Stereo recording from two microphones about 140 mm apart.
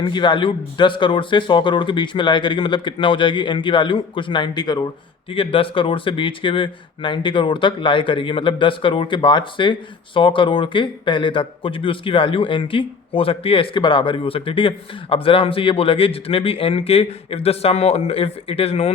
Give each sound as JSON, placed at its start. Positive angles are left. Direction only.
{"t": 0.0, "sound": "a man's voice", "side_deg": 35}